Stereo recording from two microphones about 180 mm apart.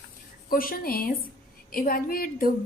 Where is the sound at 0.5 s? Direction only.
55° left (ahead or behind).